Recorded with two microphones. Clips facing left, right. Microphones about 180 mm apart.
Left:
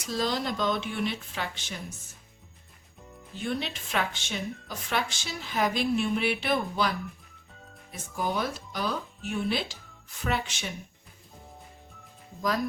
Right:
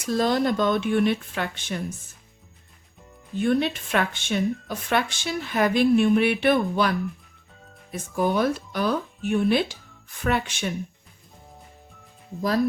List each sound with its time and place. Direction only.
0.0 s a woman's voice: 55° right (ahead or behind)
3.3 s a woman's voice: 55° right (ahead or behind)
7.9 s a woman's voice: 60° right (ahead or behind)